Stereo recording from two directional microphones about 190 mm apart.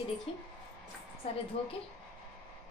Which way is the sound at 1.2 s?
30° left (ahead or behind).